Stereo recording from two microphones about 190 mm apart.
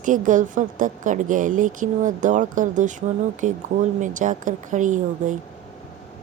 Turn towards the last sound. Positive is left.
turn(degrees=-40)  # may be behind; listen again after turning